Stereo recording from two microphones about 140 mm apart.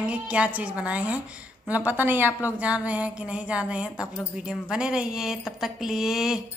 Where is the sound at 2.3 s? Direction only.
20° left (ahead or behind).